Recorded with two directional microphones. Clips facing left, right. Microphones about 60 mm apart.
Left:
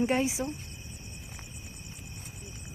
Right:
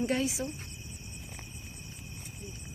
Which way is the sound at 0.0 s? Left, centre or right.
Left.